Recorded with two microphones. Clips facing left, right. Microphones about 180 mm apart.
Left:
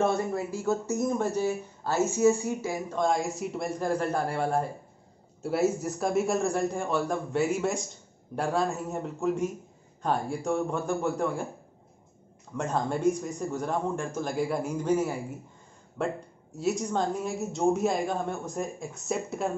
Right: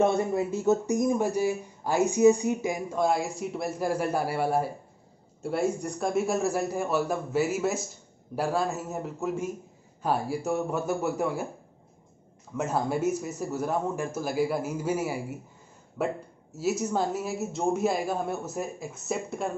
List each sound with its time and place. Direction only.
0.0 s speech: 20° right (ahead or behind)
5.4 s a man's voice: 5° left (ahead or behind)
12.5 s a man's voice: 5° right (ahead or behind)